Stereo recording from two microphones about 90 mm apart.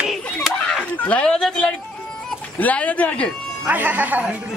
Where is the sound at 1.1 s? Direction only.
10° left (ahead or behind).